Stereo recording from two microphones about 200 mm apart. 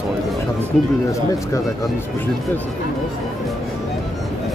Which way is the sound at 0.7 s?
Centre (ahead or behind).